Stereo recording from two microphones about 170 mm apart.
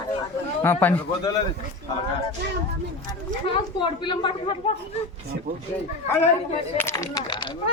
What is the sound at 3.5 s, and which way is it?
A woman's voice, 30° left (ahead or behind).